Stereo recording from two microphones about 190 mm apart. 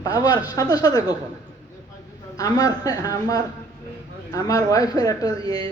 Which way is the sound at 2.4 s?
20° left (ahead or behind).